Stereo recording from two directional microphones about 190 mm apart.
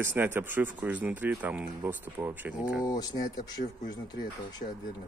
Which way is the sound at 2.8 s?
20° left (ahead or behind).